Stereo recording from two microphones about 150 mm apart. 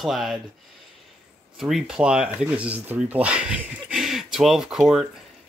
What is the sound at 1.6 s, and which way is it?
Speech, 5° right (ahead or behind).